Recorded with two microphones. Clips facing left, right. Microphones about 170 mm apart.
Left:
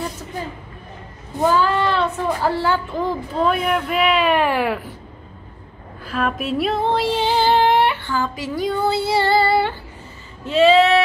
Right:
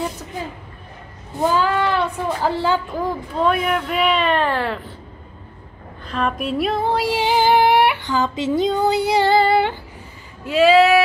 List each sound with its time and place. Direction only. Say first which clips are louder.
1.5 s child singing: even; 15° right (ahead or behind)
3.0 s speech: even; centre (ahead or behind)
6.0 s speech: even; 5° left (ahead or behind)
7.0 s female singing: even; 10° right (ahead or behind)
10.4 s speech: even; 5° right (ahead or behind)